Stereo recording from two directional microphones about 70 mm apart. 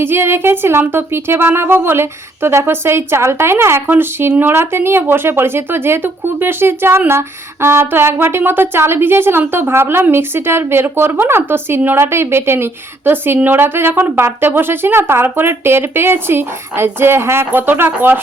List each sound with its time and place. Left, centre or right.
0.0 s a woman's voice: right